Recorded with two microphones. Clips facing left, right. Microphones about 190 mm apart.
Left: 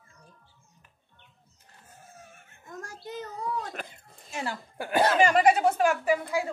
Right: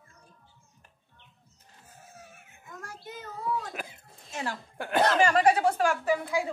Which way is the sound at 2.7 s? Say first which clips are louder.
Left 4 dB; 40° left (ahead or behind).